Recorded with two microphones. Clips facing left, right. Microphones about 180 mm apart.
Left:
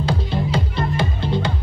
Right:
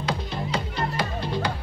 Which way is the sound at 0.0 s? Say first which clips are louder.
Left 6 dB; 30° left (ahead or behind).